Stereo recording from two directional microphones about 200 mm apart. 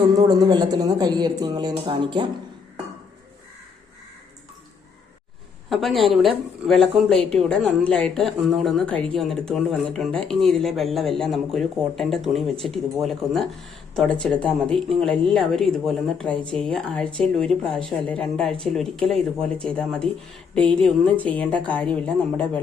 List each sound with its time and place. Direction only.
0.1 s speech: 20° right (ahead or behind)
5.6 s a woman's voice: centre (ahead or behind)